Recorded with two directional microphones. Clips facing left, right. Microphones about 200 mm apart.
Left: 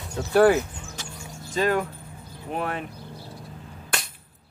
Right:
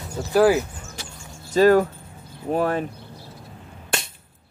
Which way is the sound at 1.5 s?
40° right (ahead or behind).